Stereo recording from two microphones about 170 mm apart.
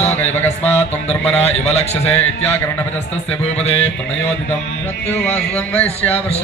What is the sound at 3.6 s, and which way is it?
Mantra, 40° left (ahead or behind).